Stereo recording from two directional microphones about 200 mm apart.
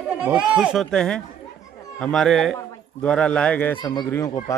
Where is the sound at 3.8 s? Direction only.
20° left (ahead or behind).